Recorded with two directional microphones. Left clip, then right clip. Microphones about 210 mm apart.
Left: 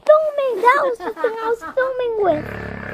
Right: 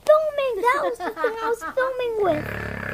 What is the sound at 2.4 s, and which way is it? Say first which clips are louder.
Speech: even; 45° right (ahead or behind).